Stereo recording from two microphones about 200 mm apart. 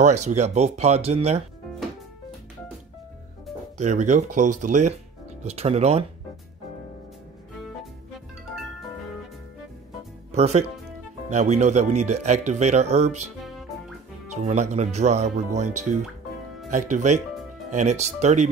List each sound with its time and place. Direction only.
0.0 s speech: 35° right (ahead or behind)
3.7 s speech: 35° right (ahead or behind)
10.3 s speech: 35° right (ahead or behind)
14.4 s speech: 35° right (ahead or behind)